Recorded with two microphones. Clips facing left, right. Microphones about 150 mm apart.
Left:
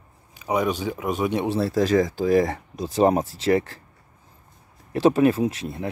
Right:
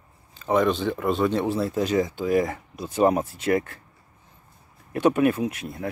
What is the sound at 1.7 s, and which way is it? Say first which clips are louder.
Speech: left 3 dB; 40° left (ahead or behind).